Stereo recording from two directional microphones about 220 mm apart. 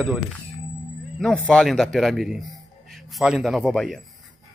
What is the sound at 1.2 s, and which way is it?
A man's voice, 5° left (ahead or behind).